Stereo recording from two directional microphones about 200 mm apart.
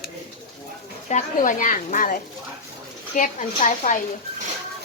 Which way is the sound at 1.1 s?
40° left (ahead or behind).